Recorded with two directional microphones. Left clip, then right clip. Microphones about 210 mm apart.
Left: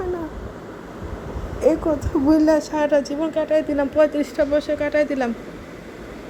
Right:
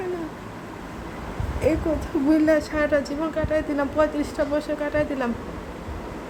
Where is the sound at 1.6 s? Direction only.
20° left (ahead or behind).